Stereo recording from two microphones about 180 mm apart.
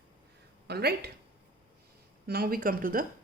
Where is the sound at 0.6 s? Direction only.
65° right (ahead or behind).